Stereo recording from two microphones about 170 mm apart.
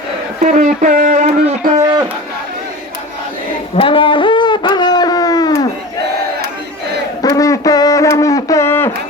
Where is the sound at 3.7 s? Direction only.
30° left (ahead or behind).